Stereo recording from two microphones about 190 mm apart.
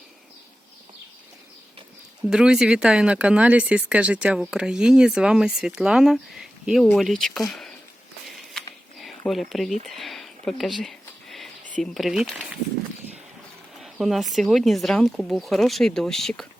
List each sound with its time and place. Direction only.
2.3 s speech: 5° right (ahead or behind)
8.5 s a sound: centre (ahead or behind)
11.8 s speech: centre (ahead or behind)
13.7 s speech: centre (ahead or behind)